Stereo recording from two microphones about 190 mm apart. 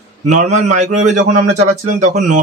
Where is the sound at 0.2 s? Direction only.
40° right (ahead or behind).